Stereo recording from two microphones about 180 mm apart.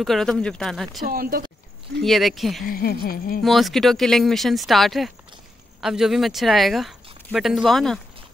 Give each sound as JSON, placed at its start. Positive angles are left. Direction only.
{"t": 0.0, "sound": "speech", "side_deg": 0}
{"t": 1.0, "sound": "speech", "side_deg": -55}
{"t": 2.0, "sound": "speech", "side_deg": 0}
{"t": 2.6, "sound": "speech", "side_deg": 55}
{"t": 3.4, "sound": "speech", "side_deg": 0}